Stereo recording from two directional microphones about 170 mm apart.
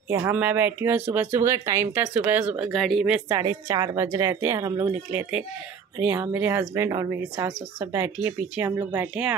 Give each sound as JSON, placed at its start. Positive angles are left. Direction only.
{"t": 0.1, "sound": "speech", "side_deg": -10}
{"t": 3.3, "sound": "speech", "side_deg": -20}